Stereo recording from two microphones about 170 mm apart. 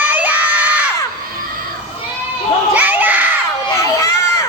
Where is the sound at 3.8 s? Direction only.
20° left (ahead or behind).